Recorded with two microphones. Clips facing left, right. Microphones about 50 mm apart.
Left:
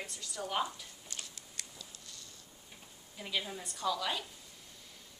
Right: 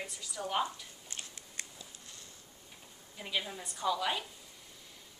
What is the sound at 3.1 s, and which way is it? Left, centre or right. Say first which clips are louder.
A woman's voice: right 1 dB; centre.